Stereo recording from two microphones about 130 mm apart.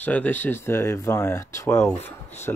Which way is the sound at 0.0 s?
15° left (ahead or behind).